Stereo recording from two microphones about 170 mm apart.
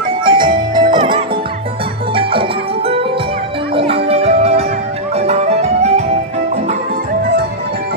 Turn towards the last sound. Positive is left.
turn(degrees=-40)  # may be behind; listen again after turning